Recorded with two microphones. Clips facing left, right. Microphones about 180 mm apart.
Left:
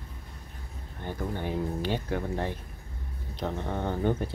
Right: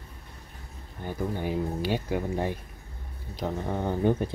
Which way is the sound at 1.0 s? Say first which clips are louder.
Right 2 dB; 10° right (ahead or behind).